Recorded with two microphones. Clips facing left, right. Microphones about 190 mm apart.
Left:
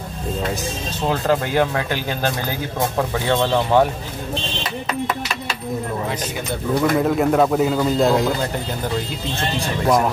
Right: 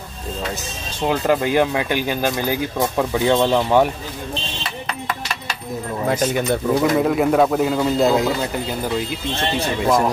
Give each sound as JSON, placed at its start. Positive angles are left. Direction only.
{"t": 1.0, "sound": "speech", "side_deg": -15}
{"t": 6.8, "sound": "speech", "side_deg": 0}